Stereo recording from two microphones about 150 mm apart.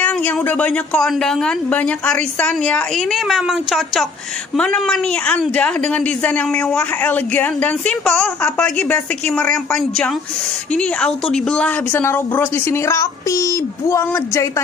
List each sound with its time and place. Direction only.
0.0 s a woman's voice: 10° left (ahead or behind)